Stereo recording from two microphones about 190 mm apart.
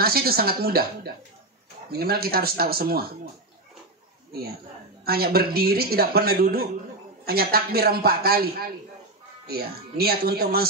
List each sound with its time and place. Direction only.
0.0 s speech: 55° right (ahead or behind)
5.0 s speech: 55° right (ahead or behind)